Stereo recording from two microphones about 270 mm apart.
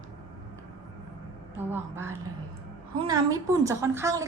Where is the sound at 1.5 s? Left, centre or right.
Centre.